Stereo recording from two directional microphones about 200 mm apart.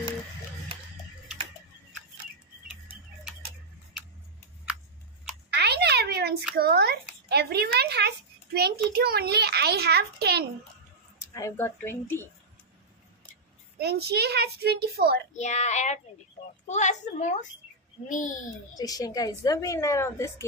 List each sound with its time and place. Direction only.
5.5 s a sound: 55° right (ahead or behind)
7.2 s a woman's voice: 55° right (ahead or behind)
11.3 s speech: 15° left (ahead or behind)
13.7 s a child's voice: 55° right (ahead or behind)
15.3 s a woman's voice: 35° left (ahead or behind)
18.8 s speech: 20° left (ahead or behind)